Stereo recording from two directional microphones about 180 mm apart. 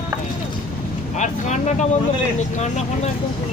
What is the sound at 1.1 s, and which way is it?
Speech, 40° left (ahead or behind).